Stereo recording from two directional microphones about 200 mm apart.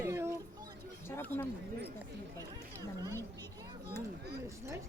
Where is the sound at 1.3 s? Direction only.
10° left (ahead or behind).